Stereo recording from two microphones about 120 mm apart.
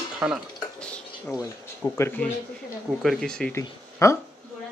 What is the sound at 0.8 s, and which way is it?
Stir, 10° left (ahead or behind).